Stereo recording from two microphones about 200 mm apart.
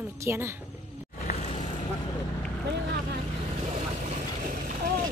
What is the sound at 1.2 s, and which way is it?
Vehicle, 30° left (ahead or behind).